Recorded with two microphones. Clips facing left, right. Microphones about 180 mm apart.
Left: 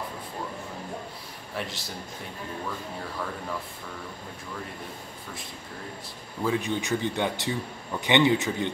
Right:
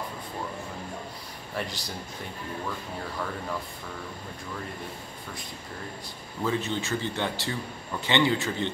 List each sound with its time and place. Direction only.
1.6 s a man's voice: centre (ahead or behind)
6.4 s speech: 10° left (ahead or behind)